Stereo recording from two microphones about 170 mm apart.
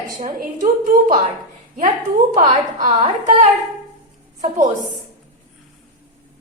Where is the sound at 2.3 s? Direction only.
50° right (ahead or behind).